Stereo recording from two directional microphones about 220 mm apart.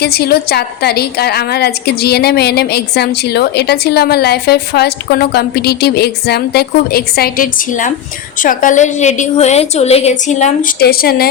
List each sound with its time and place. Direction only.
0.0 s a woman's voice: 45° left (ahead or behind)